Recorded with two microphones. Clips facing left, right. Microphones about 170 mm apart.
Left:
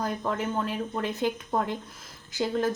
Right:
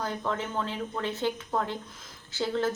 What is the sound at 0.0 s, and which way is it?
Speech, 10° left (ahead or behind).